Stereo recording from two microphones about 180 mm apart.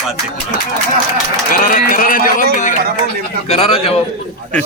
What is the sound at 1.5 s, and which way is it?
Speech, 50° left (ahead or behind).